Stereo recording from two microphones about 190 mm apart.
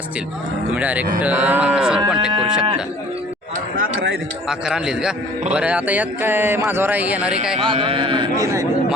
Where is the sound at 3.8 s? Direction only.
60° right (ahead or behind).